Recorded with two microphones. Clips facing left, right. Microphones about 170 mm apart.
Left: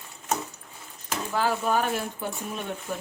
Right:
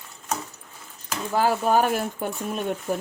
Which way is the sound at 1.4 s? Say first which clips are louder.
Right 5 dB; 40° right (ahead or behind).